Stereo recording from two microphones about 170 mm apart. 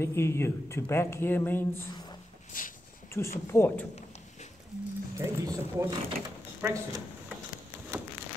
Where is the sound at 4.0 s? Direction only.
40° left (ahead or behind).